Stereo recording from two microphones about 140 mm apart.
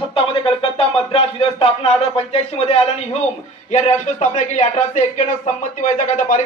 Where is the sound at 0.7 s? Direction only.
45° left (ahead or behind).